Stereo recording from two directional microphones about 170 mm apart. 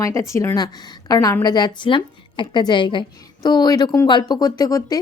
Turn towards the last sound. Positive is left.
turn(degrees=20)  # may be behind; listen again after turning